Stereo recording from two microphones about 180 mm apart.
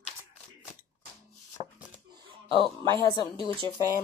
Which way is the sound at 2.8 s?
15° left (ahead or behind).